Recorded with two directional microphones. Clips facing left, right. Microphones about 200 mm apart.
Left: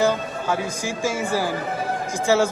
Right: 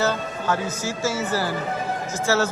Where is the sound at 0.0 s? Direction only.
10° left (ahead or behind).